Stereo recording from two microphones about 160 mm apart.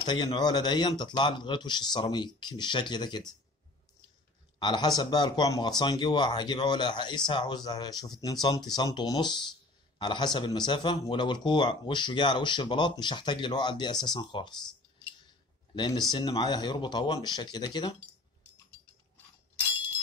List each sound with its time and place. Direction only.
0.0 s speech: 25° left (ahead or behind)
4.6 s speech: 25° left (ahead or behind)
15.7 s speech: 25° left (ahead or behind)